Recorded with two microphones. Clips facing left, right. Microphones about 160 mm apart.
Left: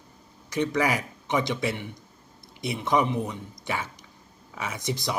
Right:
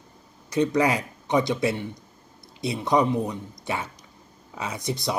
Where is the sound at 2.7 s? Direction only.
20° right (ahead or behind).